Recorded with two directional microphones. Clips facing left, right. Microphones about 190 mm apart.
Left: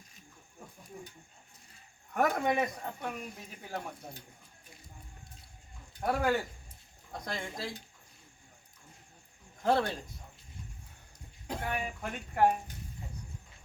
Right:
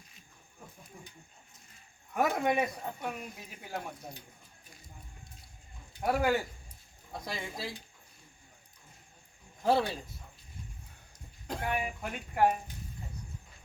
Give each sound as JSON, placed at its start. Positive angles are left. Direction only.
{"t": 2.1, "sound": "speech", "side_deg": -5}
{"t": 6.0, "sound": "speech", "side_deg": -5}
{"t": 9.6, "sound": "speech", "side_deg": -10}
{"t": 11.6, "sound": "speech", "side_deg": -10}